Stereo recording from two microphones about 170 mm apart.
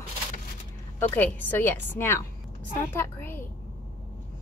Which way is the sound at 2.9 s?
15° left (ahead or behind).